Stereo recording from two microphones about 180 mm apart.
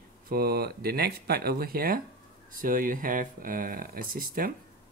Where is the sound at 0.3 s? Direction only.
60° right (ahead or behind).